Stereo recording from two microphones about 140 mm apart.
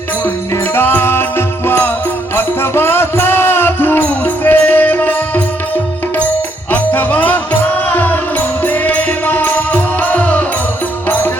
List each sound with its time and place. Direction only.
0.8 s music: 15° left (ahead or behind)
6.7 s music: 10° left (ahead or behind)